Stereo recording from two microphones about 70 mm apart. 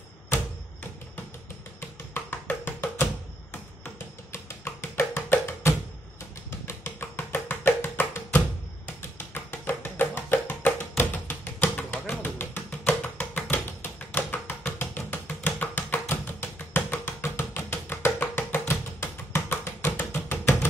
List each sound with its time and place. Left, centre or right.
2.1 s music: left
4.3 s music: left